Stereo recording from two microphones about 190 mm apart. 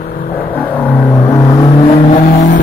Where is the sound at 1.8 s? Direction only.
35° left (ahead or behind).